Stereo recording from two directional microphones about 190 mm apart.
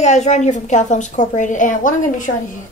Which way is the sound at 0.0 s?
35° left (ahead or behind).